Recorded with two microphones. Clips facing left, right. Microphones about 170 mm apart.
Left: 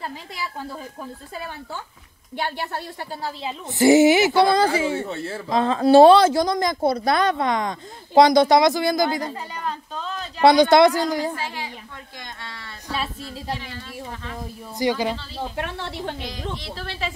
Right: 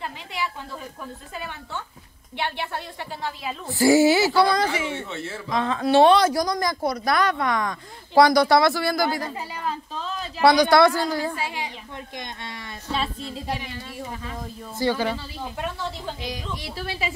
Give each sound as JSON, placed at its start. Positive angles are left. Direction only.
{"t": 0.0, "sound": "a woman's voice", "side_deg": 40}
{"t": 3.3, "sound": "a woman's voice", "side_deg": 25}
{"t": 4.6, "sound": "a woman's voice", "side_deg": 35}
{"t": 9.3, "sound": "speech", "side_deg": -5}
{"t": 10.4, "sound": "a woman's voice", "side_deg": 20}
{"t": 11.3, "sound": "speech", "side_deg": -15}
{"t": 12.9, "sound": "speech", "side_deg": 5}
{"t": 13.5, "sound": "speech", "side_deg": -15}
{"t": 14.8, "sound": "speech", "side_deg": 15}
{"t": 15.5, "sound": "speech", "side_deg": 65}
{"t": 16.5, "sound": "speech", "side_deg": -10}